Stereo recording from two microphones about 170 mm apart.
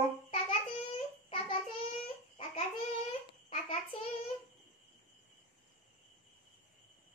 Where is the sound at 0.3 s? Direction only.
35° left (ahead or behind).